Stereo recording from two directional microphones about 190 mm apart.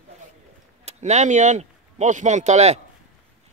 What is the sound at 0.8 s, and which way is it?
Speech, 35° right (ahead or behind).